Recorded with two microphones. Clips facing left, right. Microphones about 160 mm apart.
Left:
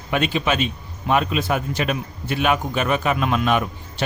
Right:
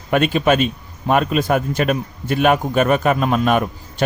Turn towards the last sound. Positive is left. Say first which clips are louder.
# right 4 dB
turn(degrees=-45)  # may be behind; listen again after turning